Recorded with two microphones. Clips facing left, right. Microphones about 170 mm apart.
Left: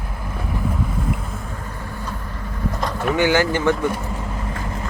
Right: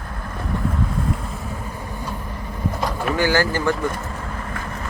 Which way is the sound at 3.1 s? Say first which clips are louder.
Left 2 dB; 20° left (ahead or behind).